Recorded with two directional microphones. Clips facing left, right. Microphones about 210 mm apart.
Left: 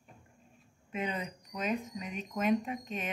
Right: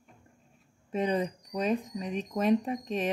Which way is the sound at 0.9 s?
35° right (ahead or behind).